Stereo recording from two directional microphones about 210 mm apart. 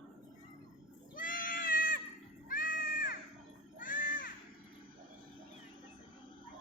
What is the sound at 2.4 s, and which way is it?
Cat, 40° left (ahead or behind).